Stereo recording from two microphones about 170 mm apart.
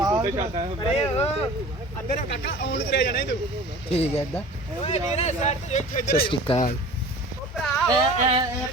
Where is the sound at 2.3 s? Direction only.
90° left.